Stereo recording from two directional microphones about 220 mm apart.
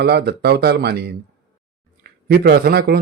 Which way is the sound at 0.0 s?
50° right (ahead or behind).